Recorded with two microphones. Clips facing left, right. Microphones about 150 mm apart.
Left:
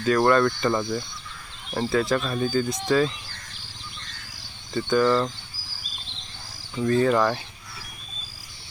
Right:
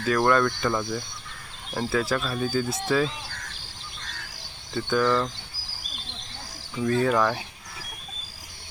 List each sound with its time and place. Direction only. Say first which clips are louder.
0.0 s speech: left 2 dB; centre (ahead or behind)
3.2 s a sound: right 5 dB; 90° right
4.7 s speech: left 3 dB; centre (ahead or behind)
6.7 s speech: left 2 dB; centre (ahead or behind)